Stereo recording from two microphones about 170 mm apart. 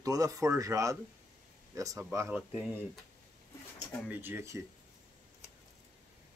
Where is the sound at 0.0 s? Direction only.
20° right (ahead or behind).